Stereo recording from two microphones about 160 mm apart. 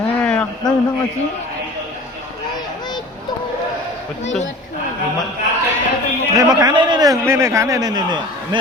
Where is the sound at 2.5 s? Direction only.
25° left (ahead or behind).